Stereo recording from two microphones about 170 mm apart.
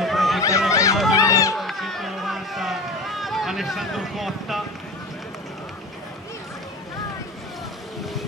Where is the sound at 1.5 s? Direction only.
Centre (ahead or behind).